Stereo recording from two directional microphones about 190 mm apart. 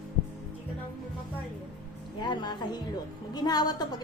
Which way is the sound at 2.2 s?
20° left (ahead or behind).